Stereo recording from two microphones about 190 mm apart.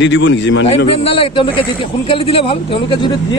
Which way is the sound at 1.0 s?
30° left (ahead or behind).